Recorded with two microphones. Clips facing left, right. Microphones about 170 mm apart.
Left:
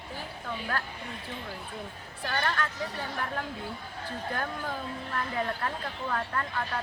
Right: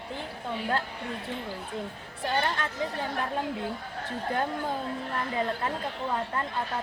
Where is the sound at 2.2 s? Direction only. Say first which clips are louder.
Right 2 dB; 25° right (ahead or behind).